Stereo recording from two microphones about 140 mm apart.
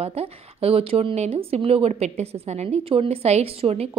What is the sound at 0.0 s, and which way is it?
Speech, 45° right (ahead or behind).